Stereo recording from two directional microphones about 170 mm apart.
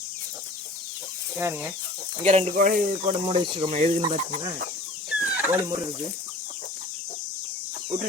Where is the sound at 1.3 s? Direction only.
15° right (ahead or behind).